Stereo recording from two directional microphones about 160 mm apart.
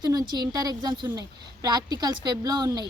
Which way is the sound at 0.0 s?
25° right (ahead or behind).